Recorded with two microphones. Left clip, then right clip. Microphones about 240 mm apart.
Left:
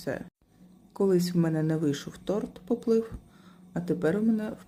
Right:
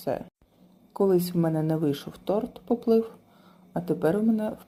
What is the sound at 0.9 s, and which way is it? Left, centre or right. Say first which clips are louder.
Speech: right 2 dB; centre.